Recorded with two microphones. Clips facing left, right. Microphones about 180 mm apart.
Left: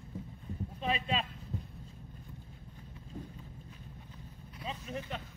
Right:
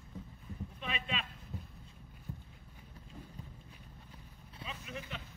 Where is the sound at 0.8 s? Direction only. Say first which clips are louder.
Left 7 dB; 35° left (ahead or behind).